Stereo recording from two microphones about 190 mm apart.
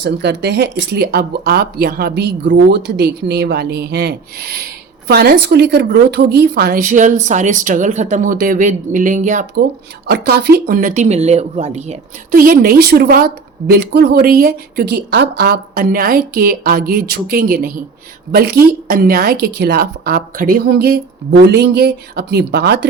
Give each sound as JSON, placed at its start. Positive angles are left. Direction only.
{"t": 0.0, "sound": "a woman's voice", "side_deg": -65}
{"t": 10.1, "sound": "speech", "side_deg": -60}
{"t": 12.3, "sound": "a woman's voice", "side_deg": -50}